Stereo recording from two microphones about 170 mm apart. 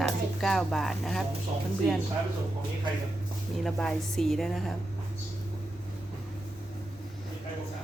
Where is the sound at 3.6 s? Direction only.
Centre (ahead or behind).